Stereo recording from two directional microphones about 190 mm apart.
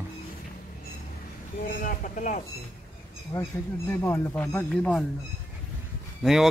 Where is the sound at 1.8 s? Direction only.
45° left (ahead or behind).